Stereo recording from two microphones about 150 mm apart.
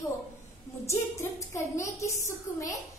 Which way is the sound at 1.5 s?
20° left (ahead or behind).